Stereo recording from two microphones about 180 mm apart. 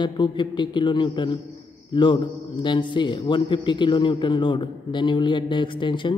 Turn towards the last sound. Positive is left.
turn(degrees=25)  # may be behind; listen again after turning